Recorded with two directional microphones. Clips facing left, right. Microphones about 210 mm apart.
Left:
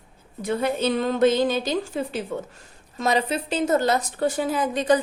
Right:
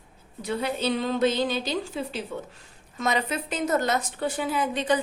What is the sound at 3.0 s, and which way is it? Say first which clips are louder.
A woman's voice: left 4 dB; 30° left (ahead or behind).